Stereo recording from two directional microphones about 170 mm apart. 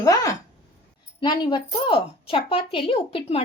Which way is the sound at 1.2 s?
25° left (ahead or behind).